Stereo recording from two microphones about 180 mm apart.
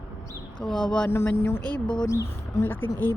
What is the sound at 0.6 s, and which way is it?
Speech, 5° left (ahead or behind).